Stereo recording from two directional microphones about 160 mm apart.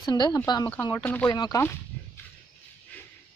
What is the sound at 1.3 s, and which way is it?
Speech, 25° left (ahead or behind).